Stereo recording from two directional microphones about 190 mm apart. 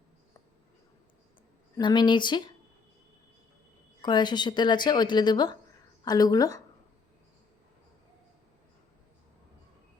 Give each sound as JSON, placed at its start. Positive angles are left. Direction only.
{"t": 1.8, "sound": "speech", "side_deg": 25}
{"t": 4.0, "sound": "speech", "side_deg": 25}